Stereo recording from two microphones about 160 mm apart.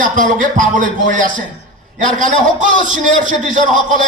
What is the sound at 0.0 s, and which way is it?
A man's voice, 55° right (ahead or behind).